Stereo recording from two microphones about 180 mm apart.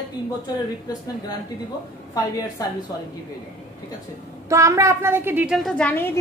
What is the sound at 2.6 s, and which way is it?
Speech, 20° left (ahead or behind).